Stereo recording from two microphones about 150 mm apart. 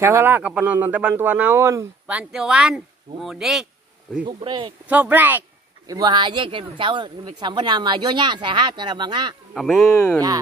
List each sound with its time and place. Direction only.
0.0 s speech: 15° right (ahead or behind)
2.1 s speech: 5° right (ahead or behind)
4.3 s speech: 35° right (ahead or behind)
4.8 s speech: 10° right (ahead or behind)
5.9 s speech: 25° right (ahead or behind)
9.5 s speech: centre (ahead or behind)